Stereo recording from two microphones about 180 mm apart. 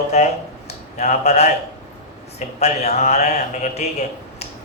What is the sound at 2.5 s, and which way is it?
A man's voice, 40° left (ahead or behind).